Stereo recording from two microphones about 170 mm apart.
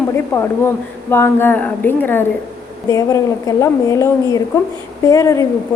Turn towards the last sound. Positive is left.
turn(degrees=20)  # may be behind; listen again after turning